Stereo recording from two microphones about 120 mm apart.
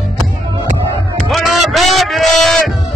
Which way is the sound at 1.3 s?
Centre (ahead or behind).